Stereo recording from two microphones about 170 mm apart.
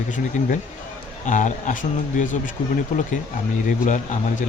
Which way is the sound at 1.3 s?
45° left (ahead or behind).